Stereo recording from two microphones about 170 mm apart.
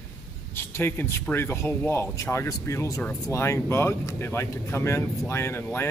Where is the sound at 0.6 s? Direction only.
15° left (ahead or behind).